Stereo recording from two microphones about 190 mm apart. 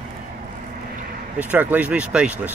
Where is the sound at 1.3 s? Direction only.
10° right (ahead or behind).